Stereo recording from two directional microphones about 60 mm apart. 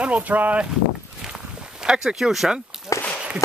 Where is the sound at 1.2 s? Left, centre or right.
Centre.